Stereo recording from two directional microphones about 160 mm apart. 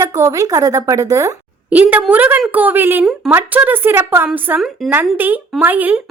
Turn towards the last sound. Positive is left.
turn(degrees=-10)  # may be behind; listen again after turning